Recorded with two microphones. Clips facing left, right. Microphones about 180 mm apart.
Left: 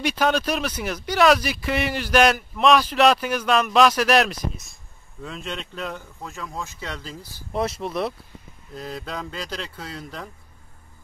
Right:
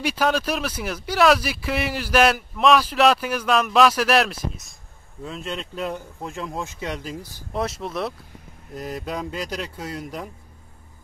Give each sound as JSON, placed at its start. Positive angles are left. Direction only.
{"t": 0.0, "sound": "speech", "side_deg": -5}
{"t": 6.2, "sound": "speech", "side_deg": -25}
{"t": 7.5, "sound": "speech", "side_deg": 0}
{"t": 8.7, "sound": "speech", "side_deg": -15}